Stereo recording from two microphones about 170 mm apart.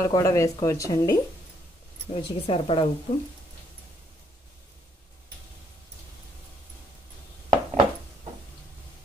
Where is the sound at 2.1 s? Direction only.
30° left (ahead or behind).